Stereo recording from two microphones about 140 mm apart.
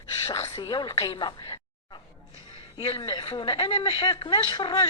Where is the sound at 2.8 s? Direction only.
40° left (ahead or behind).